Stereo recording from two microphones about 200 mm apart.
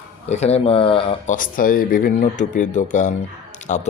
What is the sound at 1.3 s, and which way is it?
A man's voice, 45° left (ahead or behind).